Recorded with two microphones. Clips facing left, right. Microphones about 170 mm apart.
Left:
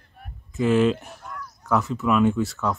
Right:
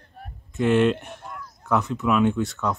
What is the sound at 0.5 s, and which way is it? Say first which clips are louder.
Speech: even; centre (ahead or behind).